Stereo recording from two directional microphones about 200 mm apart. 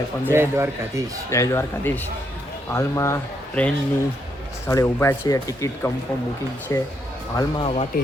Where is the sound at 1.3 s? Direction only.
15° left (ahead or behind).